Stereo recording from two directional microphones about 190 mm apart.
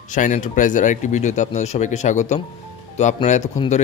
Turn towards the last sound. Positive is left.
turn(degrees=35)  # may be behind; listen again after turning